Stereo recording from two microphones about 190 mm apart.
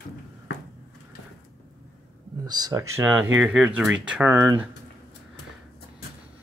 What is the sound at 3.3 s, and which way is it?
Speech, 5° right (ahead or behind).